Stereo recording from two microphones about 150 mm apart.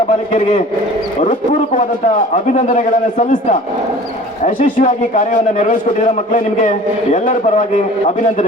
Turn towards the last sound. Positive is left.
turn(degrees=55)  # may be behind; listen again after turning